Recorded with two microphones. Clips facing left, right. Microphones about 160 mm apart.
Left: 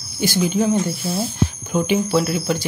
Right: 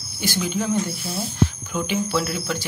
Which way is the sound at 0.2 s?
20° left (ahead or behind).